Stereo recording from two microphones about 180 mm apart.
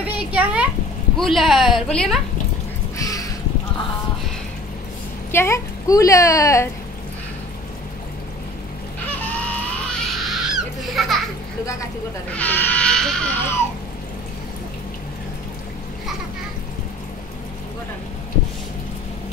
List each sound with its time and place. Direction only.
0.0 s a sound: 10° right (ahead or behind)
1.1 s a woman's voice: centre (ahead or behind)
3.0 s crow: 20° left (ahead or behind)
5.3 s a woman's voice: 15° left (ahead or behind)
9.2 s baby cry: 10° left (ahead or behind)
12.3 s a sound: 10° left (ahead or behind)